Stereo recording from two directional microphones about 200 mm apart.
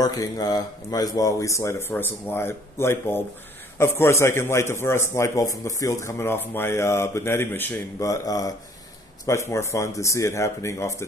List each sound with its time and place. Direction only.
0.0 s a man's voice: 20° left (ahead or behind)